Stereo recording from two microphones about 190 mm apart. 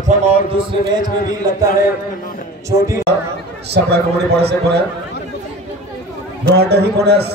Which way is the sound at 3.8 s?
65° right (ahead or behind).